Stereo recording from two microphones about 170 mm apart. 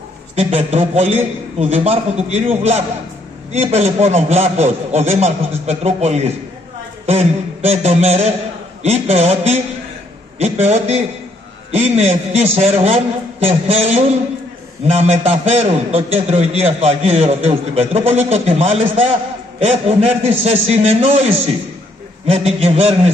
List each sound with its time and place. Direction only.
0.4 s a man's voice: 40° right (ahead or behind)